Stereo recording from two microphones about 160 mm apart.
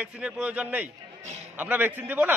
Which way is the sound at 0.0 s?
10° right (ahead or behind).